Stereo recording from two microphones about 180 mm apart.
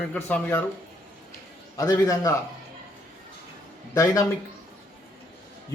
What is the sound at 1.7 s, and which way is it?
Speech, 20° left (ahead or behind).